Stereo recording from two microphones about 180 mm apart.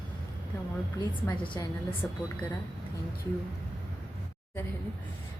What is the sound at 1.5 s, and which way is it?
Speech, 15° left (ahead or behind).